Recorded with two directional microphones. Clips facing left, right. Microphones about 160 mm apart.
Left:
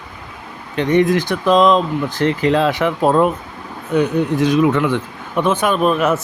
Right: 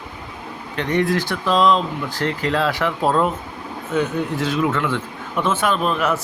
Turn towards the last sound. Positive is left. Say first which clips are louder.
# left 4 dB
turn(degrees=15)  # may be behind; listen again after turning